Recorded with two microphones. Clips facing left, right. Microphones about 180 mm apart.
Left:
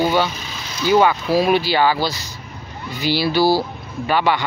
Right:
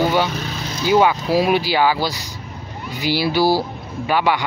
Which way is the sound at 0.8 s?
10° right (ahead or behind).